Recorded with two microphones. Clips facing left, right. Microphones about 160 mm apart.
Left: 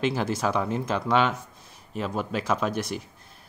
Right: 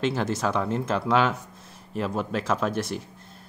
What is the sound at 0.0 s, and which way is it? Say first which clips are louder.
Speech: even; centre (ahead or behind).